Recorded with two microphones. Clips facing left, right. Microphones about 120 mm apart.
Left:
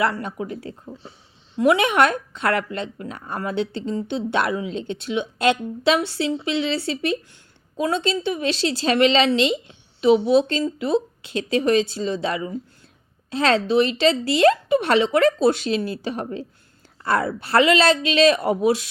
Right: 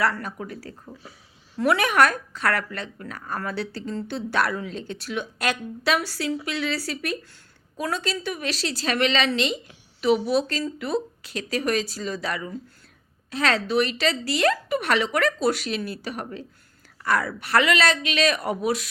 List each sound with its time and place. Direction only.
0.0 s a woman's voice: 25° left (ahead or behind)